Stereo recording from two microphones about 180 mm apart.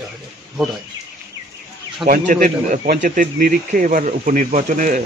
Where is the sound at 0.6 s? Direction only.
Centre (ahead or behind).